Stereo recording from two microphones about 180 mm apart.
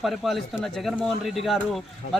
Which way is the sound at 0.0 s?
Centre (ahead or behind).